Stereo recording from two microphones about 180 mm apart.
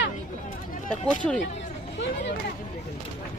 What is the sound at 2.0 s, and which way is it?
Speech, 75° left (ahead or behind).